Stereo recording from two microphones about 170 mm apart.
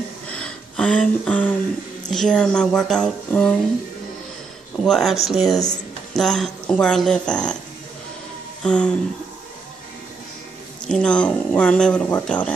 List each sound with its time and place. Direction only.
0.3 s a sound: 5° left (ahead or behind)
2.0 s speech: 5° left (ahead or behind)
4.8 s speech: centre (ahead or behind)
8.6 s speech: 5° left (ahead or behind)
10.9 s speech: 5° left (ahead or behind)